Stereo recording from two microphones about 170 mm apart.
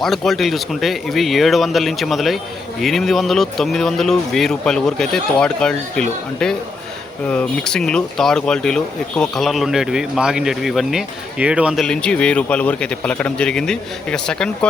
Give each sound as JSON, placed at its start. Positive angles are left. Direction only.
{"t": 0.0, "sound": "speech", "side_deg": 0}